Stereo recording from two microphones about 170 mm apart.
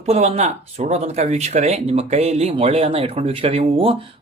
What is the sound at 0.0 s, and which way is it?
Speech, 40° right (ahead or behind).